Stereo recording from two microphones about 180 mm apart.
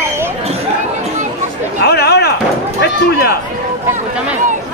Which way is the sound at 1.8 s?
65° left (ahead or behind).